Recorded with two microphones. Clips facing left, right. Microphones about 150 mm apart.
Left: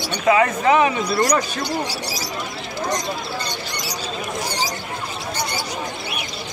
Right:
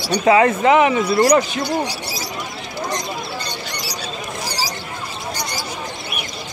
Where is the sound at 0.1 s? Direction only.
35° right (ahead or behind).